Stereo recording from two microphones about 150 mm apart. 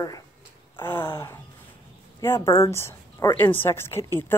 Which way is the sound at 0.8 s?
15° left (ahead or behind).